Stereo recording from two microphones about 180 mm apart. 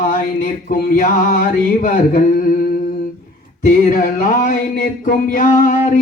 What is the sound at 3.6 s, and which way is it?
Mantra, 45° left (ahead or behind).